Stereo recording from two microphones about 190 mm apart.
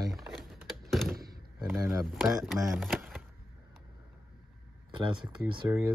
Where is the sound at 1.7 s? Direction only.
15° right (ahead or behind).